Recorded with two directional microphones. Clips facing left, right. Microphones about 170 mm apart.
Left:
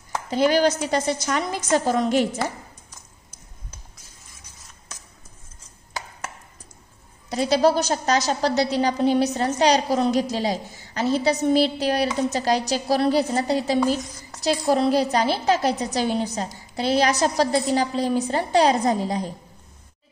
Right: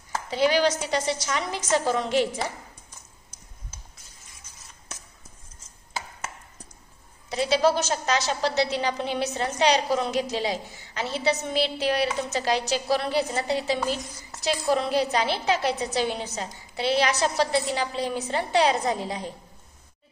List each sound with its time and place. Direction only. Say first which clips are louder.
0.3 s a woman's voice: left 3 dB; 45° left (ahead or behind)
7.2 s a woman's voice: left 3 dB; 40° left (ahead or behind)